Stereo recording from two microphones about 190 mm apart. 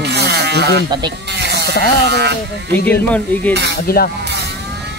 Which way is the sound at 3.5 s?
65° right (ahead or behind).